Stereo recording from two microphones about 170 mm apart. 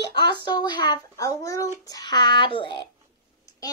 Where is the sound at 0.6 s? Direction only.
25° left (ahead or behind).